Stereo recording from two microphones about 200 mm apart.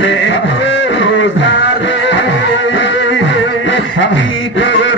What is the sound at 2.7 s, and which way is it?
Music, 65° left (ahead or behind).